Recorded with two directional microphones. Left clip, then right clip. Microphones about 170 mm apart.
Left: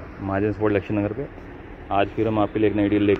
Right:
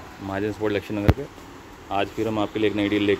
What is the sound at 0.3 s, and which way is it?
Speech, 15° right (ahead or behind).